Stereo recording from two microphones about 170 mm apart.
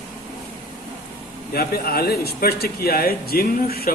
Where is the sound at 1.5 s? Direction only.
60° left (ahead or behind).